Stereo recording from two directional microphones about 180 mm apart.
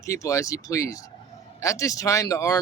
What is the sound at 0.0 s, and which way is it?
Speech, 15° left (ahead or behind).